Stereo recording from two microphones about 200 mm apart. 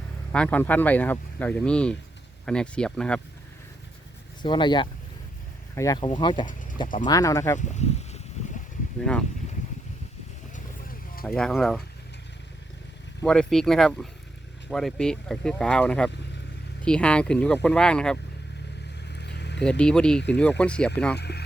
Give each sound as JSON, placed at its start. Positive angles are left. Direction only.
{"t": 0.3, "sound": "speech", "side_deg": 5}
{"t": 4.4, "sound": "speech", "side_deg": 25}
{"t": 6.4, "sound": "speech", "side_deg": 40}
{"t": 7.0, "sound": "speech", "side_deg": 15}
{"t": 7.7, "sound": "a sound", "side_deg": 35}
{"t": 11.3, "sound": "speech", "side_deg": 5}
{"t": 13.2, "sound": "speech", "side_deg": 5}
{"t": 19.1, "sound": "vehicle", "side_deg": 60}
{"t": 19.6, "sound": "speech", "side_deg": 5}
{"t": 21.2, "sound": "speech", "side_deg": 55}